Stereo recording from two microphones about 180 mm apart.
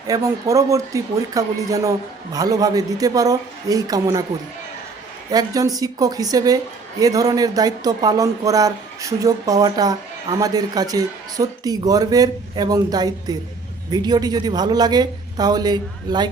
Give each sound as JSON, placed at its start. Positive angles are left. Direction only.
{"t": 0.1, "sound": "speech", "side_deg": -20}
{"t": 5.3, "sound": "speech", "side_deg": -20}